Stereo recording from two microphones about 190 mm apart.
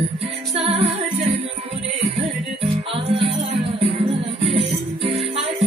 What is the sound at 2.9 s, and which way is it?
Music, 30° right (ahead or behind).